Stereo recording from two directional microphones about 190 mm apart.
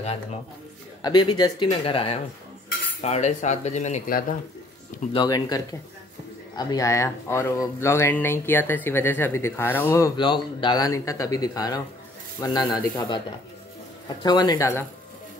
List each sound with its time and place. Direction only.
1.0 s speech: 20° left (ahead or behind); by 4.2 s 40° left (ahead or behind)
5.1 s speech: 20° left (ahead or behind)